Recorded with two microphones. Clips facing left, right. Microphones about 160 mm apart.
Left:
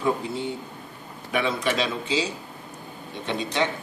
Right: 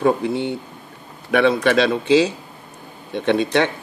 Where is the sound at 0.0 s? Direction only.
65° right (ahead or behind).